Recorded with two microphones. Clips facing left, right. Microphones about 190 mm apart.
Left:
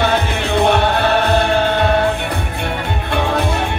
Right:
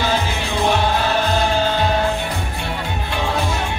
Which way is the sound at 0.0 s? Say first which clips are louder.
Left 4 dB; 60° left (ahead or behind).